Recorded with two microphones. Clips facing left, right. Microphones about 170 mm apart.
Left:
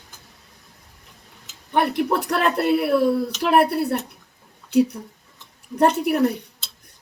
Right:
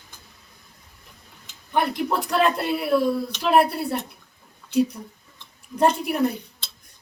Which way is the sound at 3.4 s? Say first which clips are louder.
Left 1 dB; 60° left (ahead or behind).